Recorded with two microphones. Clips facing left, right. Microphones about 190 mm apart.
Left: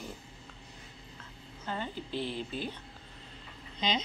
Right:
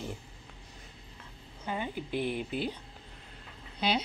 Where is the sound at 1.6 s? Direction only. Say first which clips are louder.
Right 2 dB; 10° right (ahead or behind).